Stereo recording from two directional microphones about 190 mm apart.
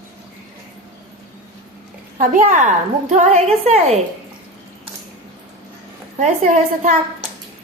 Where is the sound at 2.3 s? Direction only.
40° right (ahead or behind).